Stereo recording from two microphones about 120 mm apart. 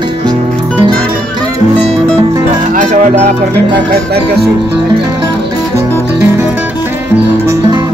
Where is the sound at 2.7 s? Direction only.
75° right (ahead or behind).